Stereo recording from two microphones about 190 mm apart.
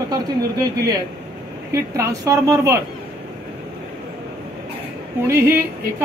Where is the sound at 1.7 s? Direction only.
15° right (ahead or behind).